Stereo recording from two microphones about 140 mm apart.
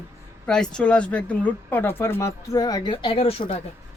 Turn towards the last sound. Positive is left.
turn(degrees=40)  # may be behind; listen again after turning